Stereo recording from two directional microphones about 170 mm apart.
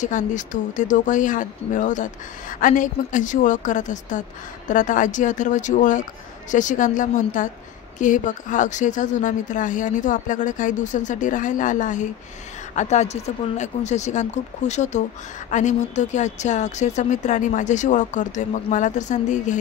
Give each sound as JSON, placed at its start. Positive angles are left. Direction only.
{"t": 0.0, "sound": "a woman's voice", "side_deg": 45}